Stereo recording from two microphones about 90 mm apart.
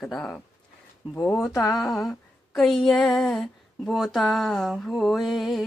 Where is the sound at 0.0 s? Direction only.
10° left (ahead or behind).